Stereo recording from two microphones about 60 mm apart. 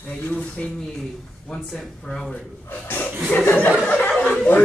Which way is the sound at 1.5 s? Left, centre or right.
Centre.